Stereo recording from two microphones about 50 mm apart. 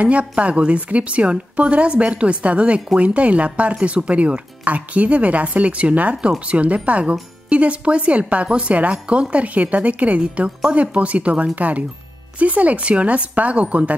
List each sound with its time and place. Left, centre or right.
0.0 s a woman's voice: right